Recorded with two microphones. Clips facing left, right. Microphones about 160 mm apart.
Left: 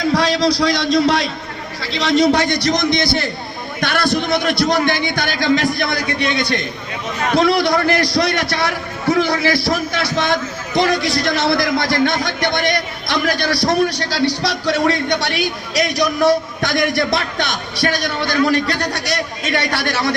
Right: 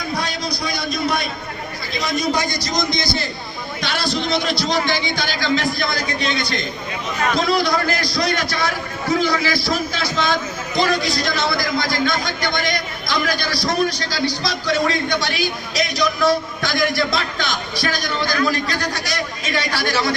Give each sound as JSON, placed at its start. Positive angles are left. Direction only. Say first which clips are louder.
{"t": 0.0, "sound": "a man's voice", "louder": "left 9 dB", "side_deg": 90}